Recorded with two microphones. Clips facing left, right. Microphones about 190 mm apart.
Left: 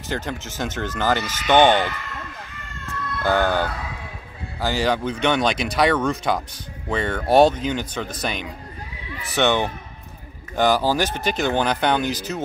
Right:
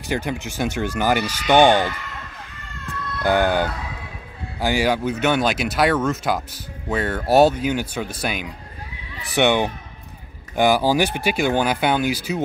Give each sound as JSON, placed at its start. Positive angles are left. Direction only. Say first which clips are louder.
{"t": 0.0, "sound": "speech", "louder": "right 3 dB", "side_deg": -15}
{"t": 2.9, "sound": "speech", "louder": "right 1 dB", "side_deg": -15}